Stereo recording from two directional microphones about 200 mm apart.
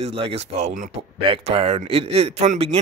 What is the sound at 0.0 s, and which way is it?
Speech, 30° right (ahead or behind).